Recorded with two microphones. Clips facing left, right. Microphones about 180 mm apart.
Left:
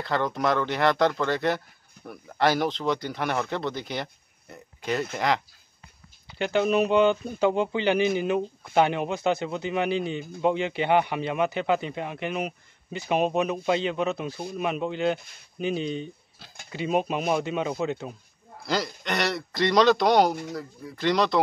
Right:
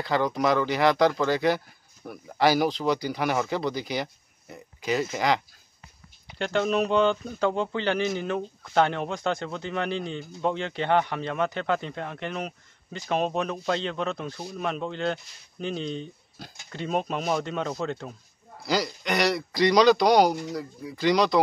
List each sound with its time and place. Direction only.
0.0 s speech: centre (ahead or behind)